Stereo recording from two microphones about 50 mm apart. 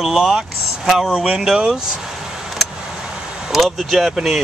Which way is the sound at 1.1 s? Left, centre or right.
Right.